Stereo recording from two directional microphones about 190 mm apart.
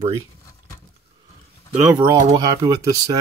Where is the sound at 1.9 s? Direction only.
20° right (ahead or behind).